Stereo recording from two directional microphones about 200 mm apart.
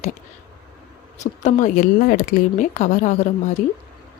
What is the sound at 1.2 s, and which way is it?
A woman's voice, 40° left (ahead or behind).